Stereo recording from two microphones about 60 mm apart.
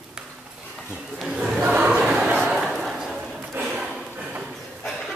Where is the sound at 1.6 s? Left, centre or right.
Right.